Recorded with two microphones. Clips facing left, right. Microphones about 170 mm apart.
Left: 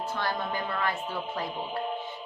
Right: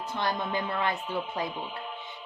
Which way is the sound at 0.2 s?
20° right (ahead or behind).